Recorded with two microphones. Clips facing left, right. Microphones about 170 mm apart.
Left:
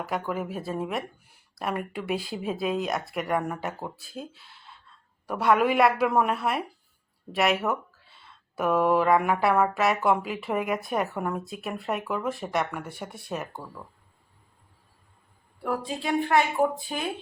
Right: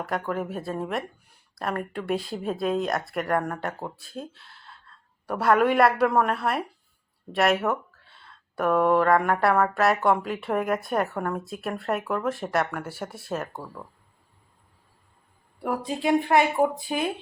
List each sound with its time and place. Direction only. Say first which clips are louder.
0.0 s speech: right 1 dB; centre (ahead or behind)
15.6 s a woman's voice: right 3 dB; 15° right (ahead or behind)